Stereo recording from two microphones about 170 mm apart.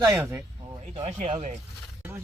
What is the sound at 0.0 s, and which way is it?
Speech, 15° right (ahead or behind).